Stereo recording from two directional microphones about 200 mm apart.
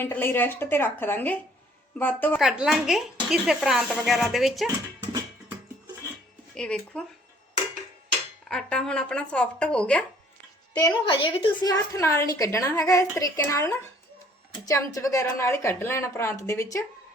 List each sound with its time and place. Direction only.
0.0 s a woman's voice: 10° left (ahead or behind)
2.4 s speech: centre (ahead or behind)
6.5 s speech: 5° left (ahead or behind)
8.4 s speech: 5° left (ahead or behind)
10.8 s a woman's voice: 20° left (ahead or behind)